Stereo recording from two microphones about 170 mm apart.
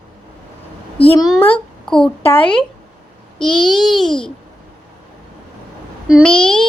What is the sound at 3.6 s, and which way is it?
Speech, centre (ahead or behind).